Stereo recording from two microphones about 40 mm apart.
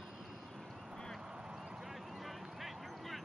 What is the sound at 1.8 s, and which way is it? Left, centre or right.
Vehicle, centre.